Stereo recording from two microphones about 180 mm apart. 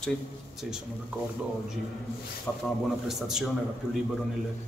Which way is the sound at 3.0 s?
Centre (ahead or behind).